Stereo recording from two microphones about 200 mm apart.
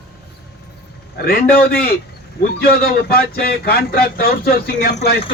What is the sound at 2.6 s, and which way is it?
A man's voice, 50° left (ahead or behind).